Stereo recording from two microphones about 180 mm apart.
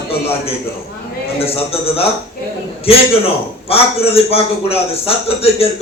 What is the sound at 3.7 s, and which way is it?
A man's voice, 35° left (ahead or behind).